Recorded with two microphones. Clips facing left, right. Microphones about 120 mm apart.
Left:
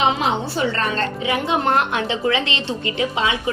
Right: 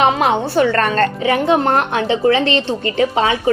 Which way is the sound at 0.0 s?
55° right (ahead or behind).